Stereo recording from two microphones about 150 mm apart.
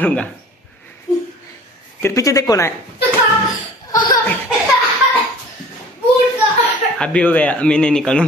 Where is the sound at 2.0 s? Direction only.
20° left (ahead or behind).